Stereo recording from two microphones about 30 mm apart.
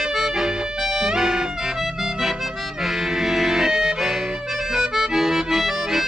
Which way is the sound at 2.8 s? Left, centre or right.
Centre.